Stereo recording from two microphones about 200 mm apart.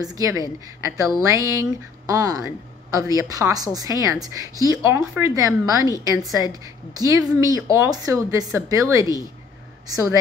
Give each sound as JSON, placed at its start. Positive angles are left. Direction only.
{"t": 0.0, "sound": "a woman's voice", "side_deg": -15}